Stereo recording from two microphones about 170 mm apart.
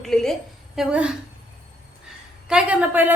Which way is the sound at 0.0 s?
Centre (ahead or behind).